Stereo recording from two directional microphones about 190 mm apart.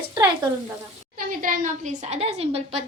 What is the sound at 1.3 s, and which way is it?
A woman's voice, 45° right (ahead or behind).